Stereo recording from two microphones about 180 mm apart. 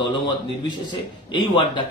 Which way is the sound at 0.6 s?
25° left (ahead or behind).